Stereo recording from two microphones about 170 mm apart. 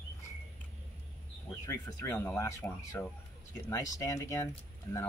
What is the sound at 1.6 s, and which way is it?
Speech, 15° left (ahead or behind).